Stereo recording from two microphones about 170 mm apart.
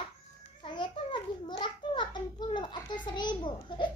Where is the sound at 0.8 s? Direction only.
30° left (ahead or behind).